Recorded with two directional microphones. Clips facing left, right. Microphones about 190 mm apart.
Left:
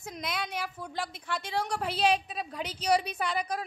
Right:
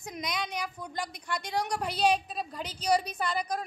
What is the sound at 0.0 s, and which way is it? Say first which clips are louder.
A woman's voice: even; 5° left (ahead or behind).